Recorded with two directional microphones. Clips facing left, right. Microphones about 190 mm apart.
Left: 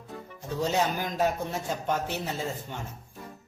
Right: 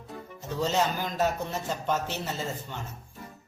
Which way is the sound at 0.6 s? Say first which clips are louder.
Even; 10° left (ahead or behind).